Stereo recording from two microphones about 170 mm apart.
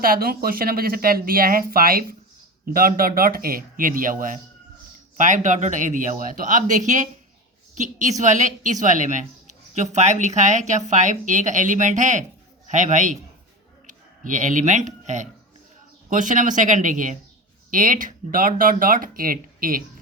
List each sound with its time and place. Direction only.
0.0 s speech: 60° right (ahead or behind)